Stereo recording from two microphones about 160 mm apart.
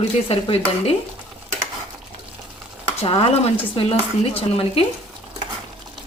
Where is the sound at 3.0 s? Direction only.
40° left (ahead or behind).